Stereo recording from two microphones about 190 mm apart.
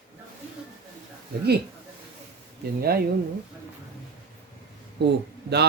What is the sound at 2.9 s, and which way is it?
Speech, 55° right (ahead or behind).